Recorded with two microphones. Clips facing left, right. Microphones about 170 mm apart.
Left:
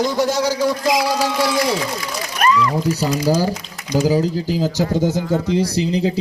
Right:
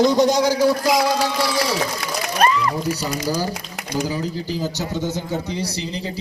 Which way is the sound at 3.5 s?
60° right (ahead or behind).